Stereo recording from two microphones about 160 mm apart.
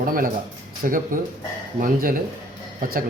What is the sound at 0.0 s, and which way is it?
Speech, 60° right (ahead or behind).